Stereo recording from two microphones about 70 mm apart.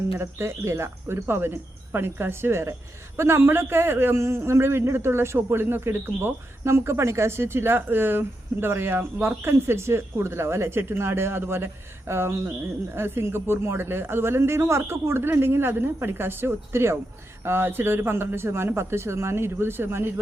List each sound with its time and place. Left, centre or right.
0.2 s a man's voice: right